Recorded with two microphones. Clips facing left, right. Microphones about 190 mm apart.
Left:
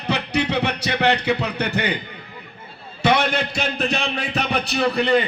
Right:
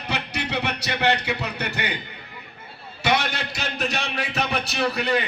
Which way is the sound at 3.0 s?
60° left (ahead or behind).